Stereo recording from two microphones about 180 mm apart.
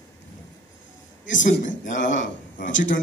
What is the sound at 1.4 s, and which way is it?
A man's voice, 45° left (ahead or behind).